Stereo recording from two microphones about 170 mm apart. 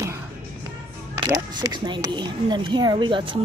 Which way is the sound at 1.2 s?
25° right (ahead or behind).